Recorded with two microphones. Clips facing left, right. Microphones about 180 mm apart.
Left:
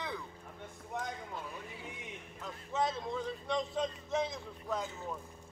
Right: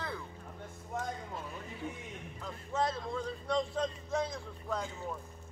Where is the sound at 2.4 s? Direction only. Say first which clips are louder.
Right 1 dB; centre (ahead or behind).